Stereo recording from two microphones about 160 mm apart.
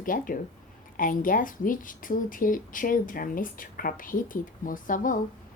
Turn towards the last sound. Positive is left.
turn(degrees=55)  # may be behind; listen again after turning